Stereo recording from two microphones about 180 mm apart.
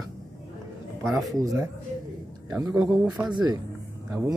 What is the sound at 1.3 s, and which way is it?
Speech, 20° right (ahead or behind).